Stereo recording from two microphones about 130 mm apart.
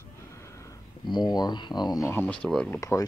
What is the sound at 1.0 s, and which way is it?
Speech, 35° left (ahead or behind).